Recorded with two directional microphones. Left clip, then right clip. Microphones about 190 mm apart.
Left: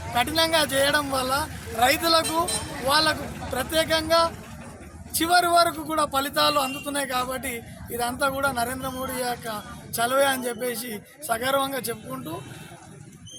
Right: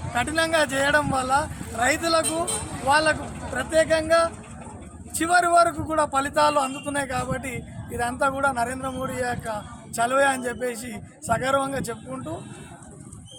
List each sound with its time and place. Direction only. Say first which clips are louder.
0.1 s a man's voice: left 1 dB; centre (ahead or behind)
2.2 s speech: left 2 dB; 60° right (ahead or behind)
2.8 s a man's voice: right 2 dB; centre (ahead or behind)